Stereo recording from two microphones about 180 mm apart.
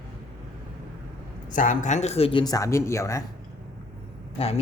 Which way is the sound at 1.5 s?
45° left (ahead or behind).